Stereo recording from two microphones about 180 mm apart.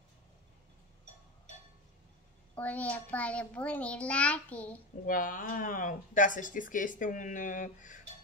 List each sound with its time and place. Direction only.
2.5 s a child's voice: 10° left (ahead or behind)
5.0 s speech: 50° left (ahead or behind)